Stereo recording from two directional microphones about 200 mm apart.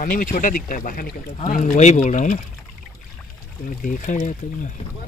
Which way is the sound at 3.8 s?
40° left (ahead or behind).